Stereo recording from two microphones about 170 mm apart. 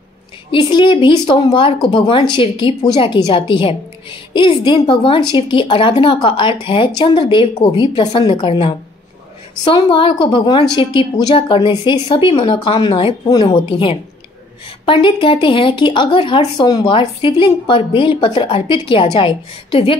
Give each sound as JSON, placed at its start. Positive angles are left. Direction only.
{"t": 0.5, "sound": "a woman's voice", "side_deg": 30}